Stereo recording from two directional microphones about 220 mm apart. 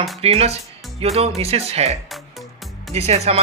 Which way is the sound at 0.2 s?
25° right (ahead or behind).